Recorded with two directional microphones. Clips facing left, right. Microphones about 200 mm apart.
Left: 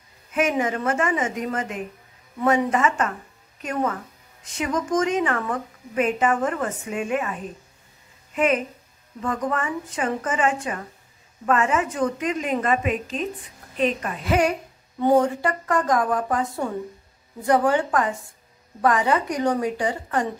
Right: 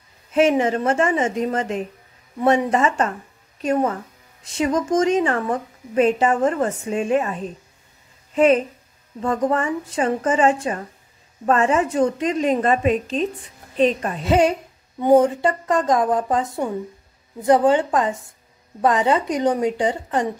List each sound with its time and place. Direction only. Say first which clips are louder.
0.3 s a woman's voice: right 6 dB; 30° right (ahead or behind)
9.2 s a woman's voice: right 5 dB; 30° right (ahead or behind)